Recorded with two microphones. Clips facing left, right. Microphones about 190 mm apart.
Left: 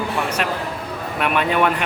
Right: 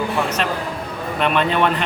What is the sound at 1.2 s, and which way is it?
Speech, 10° left (ahead or behind).